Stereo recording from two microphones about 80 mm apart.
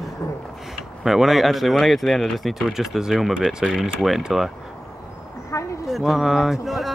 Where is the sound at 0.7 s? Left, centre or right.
Centre.